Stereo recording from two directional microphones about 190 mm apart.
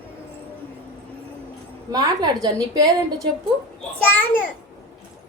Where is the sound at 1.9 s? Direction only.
20° right (ahead or behind).